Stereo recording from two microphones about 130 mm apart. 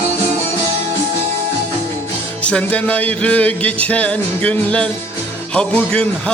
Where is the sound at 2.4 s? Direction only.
10° left (ahead or behind).